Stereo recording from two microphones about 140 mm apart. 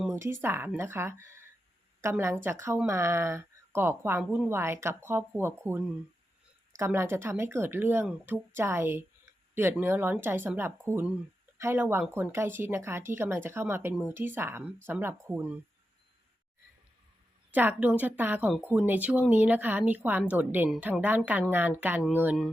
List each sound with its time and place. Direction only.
0.1 s speech: 20° right (ahead or behind)
4.2 s a woman's voice: 5° right (ahead or behind)
4.4 s speech: 15° right (ahead or behind)
17.5 s speech: 10° right (ahead or behind)